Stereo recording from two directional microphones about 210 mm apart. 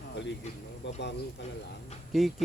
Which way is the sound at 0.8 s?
55° left (ahead or behind).